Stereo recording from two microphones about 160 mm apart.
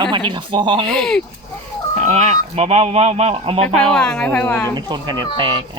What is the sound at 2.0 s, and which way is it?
Speech, 45° right (ahead or behind).